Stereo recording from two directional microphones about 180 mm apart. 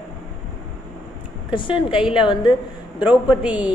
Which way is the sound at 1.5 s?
25° left (ahead or behind).